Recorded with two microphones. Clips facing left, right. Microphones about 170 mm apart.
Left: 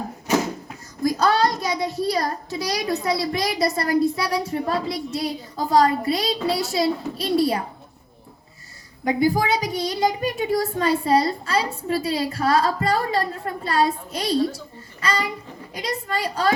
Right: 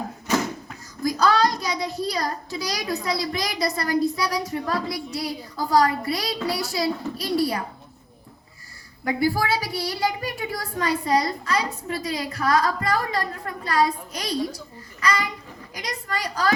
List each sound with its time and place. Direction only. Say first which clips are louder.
1.0 s child singing: left 1 dB; 25° left (ahead or behind)
2.0 s a child's voice: left 3 dB; 25° left (ahead or behind)
9.0 s a child's voice: left 3 dB; 20° left (ahead or behind)